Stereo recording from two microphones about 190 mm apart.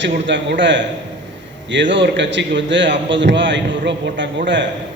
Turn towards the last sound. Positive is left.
turn(degrees=-70)  # may be behind; listen again after turning